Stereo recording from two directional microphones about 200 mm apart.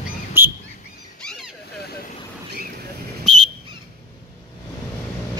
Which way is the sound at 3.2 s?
Centre (ahead or behind).